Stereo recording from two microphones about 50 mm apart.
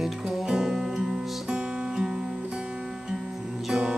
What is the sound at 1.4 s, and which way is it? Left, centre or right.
Music, centre.